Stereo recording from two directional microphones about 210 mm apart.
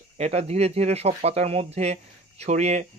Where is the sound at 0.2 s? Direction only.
30° right (ahead or behind).